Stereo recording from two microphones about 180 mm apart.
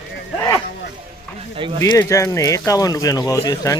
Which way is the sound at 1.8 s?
15° left (ahead or behind).